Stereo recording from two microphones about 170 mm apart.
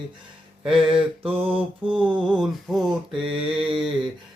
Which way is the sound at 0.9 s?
30° right (ahead or behind).